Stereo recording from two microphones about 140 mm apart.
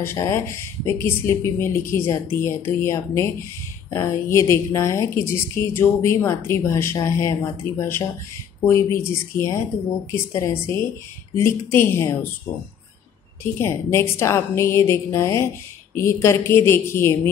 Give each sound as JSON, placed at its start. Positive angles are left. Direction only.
{"t": 0.0, "sound": "a woman's voice", "side_deg": 15}
{"t": 13.4, "sound": "a woman's voice", "side_deg": 20}